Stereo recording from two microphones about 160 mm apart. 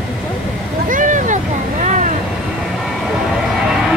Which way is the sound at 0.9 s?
55° right (ahead or behind).